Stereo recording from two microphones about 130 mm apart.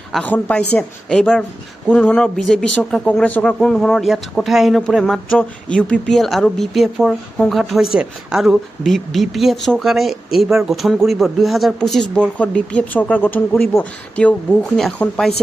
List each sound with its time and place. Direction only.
0.2 s a woman's voice: 15° left (ahead or behind)